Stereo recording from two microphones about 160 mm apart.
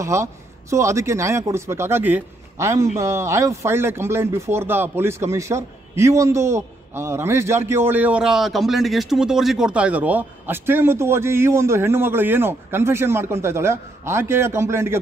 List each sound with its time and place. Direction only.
0.0 s a man's voice: 20° right (ahead or behind)